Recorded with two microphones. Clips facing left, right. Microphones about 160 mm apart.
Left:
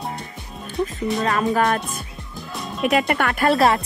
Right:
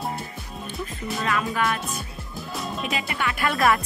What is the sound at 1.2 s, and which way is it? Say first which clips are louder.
Speech: left 5 dB; 40° left (ahead or behind).